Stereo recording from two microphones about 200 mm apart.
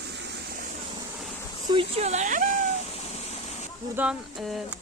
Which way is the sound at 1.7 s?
30° right (ahead or behind).